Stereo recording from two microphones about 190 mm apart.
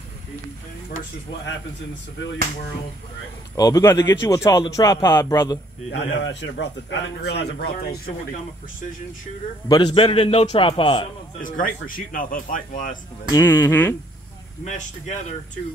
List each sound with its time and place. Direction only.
3.5 s speech: 20° left (ahead or behind)
5.9 s a man's voice: 65° left (ahead or behind)
9.7 s a man's voice: 25° left (ahead or behind)
11.4 s speech: 45° left (ahead or behind)
13.3 s speech: 10° left (ahead or behind)
14.6 s speech: 40° left (ahead or behind)